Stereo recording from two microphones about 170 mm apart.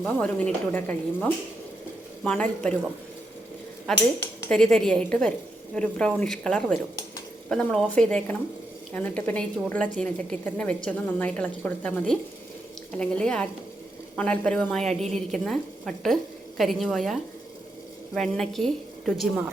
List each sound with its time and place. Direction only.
0.0 s a woman's voice: 5° left (ahead or behind)
4.2 s a woman's voice: 5° left (ahead or behind)